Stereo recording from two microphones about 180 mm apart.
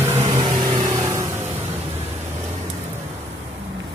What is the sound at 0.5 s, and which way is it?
Vehicle, 25° right (ahead or behind).